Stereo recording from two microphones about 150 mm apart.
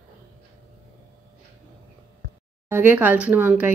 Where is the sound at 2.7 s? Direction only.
15° right (ahead or behind).